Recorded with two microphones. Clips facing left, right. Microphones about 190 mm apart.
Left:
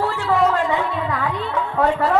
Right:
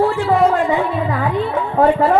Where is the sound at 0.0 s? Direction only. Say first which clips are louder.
Right 5 dB; 40° right (ahead or behind).